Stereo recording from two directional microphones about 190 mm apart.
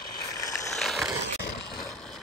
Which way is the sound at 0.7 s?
Centre (ahead or behind).